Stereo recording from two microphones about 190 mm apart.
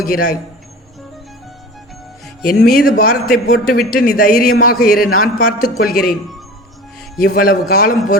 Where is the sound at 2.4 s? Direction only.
50° left (ahead or behind).